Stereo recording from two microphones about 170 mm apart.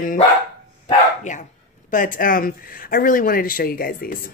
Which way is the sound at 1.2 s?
45° left (ahead or behind).